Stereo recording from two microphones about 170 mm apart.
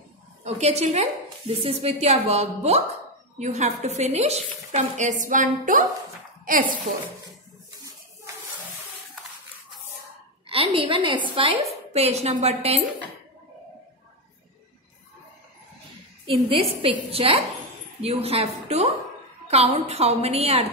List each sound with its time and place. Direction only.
0.4 s a woman's voice: 40° right (ahead or behind)
10.5 s a woman's voice: 30° right (ahead or behind)
16.3 s a woman's voice: 30° right (ahead or behind)